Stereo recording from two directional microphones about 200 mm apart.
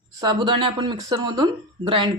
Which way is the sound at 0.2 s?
20° right (ahead or behind).